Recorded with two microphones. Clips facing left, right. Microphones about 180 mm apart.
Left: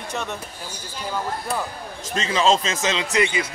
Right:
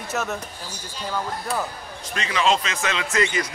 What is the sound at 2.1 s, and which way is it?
Speech, 25° left (ahead or behind).